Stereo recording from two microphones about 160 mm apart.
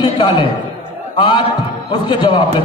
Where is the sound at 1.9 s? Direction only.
30° left (ahead or behind).